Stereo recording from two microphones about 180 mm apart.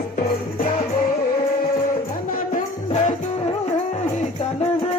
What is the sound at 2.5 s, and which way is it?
Music, 45° left (ahead or behind).